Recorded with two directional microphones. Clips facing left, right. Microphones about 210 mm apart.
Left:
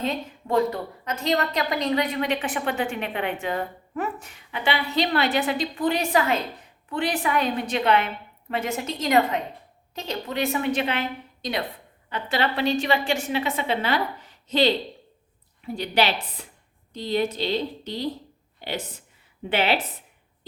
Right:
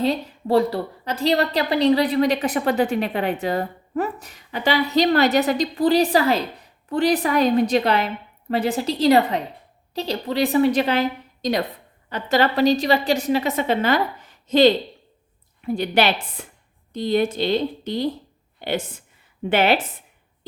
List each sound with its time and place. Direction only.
0.0 s a woman's voice: 35° right (ahead or behind); by 18.1 s 50° right (ahead or behind)
19.5 s speech: 50° right (ahead or behind)